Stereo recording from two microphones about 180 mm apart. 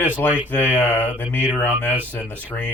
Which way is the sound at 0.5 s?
10° left (ahead or behind).